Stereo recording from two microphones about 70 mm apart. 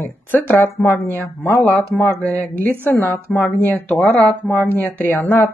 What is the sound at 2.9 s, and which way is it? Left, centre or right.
A woman's voice, left.